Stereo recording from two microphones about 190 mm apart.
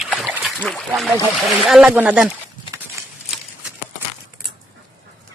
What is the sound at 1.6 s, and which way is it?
Speech, 5° right (ahead or behind).